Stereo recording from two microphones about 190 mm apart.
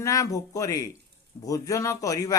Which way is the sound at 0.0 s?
15° left (ahead or behind).